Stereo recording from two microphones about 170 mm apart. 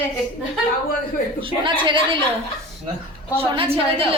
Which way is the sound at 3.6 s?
35° right (ahead or behind).